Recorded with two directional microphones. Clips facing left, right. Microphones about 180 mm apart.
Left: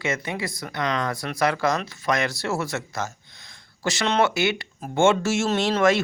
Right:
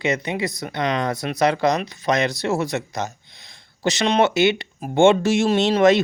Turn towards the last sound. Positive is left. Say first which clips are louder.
# right 5 dB
turn(degrees=-20)  # may be behind; listen again after turning